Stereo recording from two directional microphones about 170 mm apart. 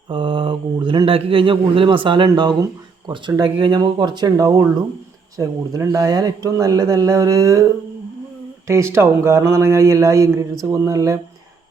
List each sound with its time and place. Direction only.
0.1 s a man's voice: 30° right (ahead or behind)
8.6 s a man's voice: 15° right (ahead or behind)